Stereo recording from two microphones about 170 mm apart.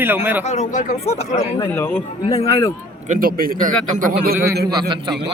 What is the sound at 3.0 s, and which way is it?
A man's voice, 50° right (ahead or behind).